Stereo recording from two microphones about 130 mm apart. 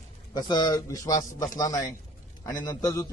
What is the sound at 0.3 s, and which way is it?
A man's voice, 35° left (ahead or behind).